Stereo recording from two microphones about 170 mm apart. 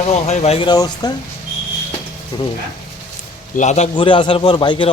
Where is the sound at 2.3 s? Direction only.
25° left (ahead or behind).